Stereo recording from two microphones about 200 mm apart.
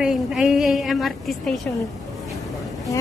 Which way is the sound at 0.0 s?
5° right (ahead or behind).